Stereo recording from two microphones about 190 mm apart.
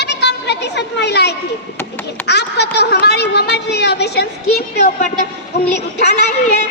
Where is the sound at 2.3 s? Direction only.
60° left (ahead or behind).